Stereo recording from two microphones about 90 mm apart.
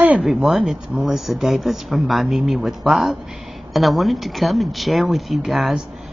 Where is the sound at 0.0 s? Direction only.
15° right (ahead or behind).